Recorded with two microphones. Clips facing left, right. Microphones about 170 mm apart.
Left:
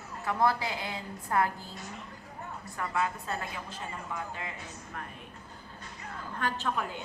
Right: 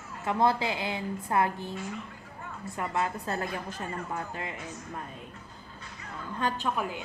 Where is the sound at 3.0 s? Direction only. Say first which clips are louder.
Right 1 dB; 35° right (ahead or behind).